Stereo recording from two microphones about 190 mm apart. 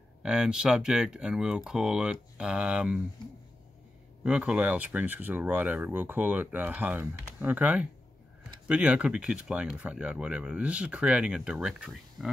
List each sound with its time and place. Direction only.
0.2 s speech: 5° right (ahead or behind)
4.2 s speech: 5° right (ahead or behind)